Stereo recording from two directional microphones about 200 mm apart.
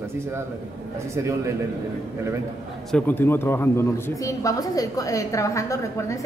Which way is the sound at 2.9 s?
5° left (ahead or behind).